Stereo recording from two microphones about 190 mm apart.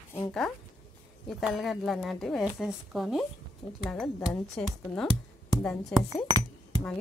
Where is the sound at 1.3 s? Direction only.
Centre (ahead or behind).